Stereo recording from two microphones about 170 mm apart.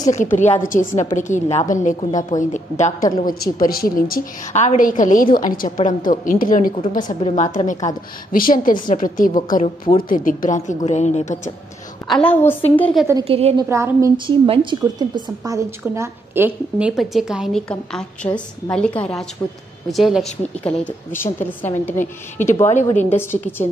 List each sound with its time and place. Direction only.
0.4 s a woman's voice: 50° left (ahead or behind)
3.3 s a woman's voice: 55° left (ahead or behind)
12.1 s a woman's voice: 10° left (ahead or behind)
13.2 s a woman's voice: 35° right (ahead or behind)
13.6 s a woman's voice: 15° right (ahead or behind)
14.1 s a woman's voice: 30° right (ahead or behind); by 20.7 s centre (ahead or behind)
20.8 s a woman's voice: 10° left (ahead or behind)